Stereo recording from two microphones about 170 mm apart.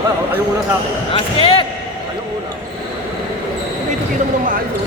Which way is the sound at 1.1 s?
30° left (ahead or behind).